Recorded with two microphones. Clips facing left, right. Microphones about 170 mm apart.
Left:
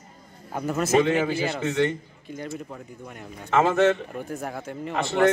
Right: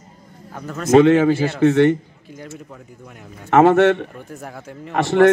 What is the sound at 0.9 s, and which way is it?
A man's voice, 75° right (ahead or behind).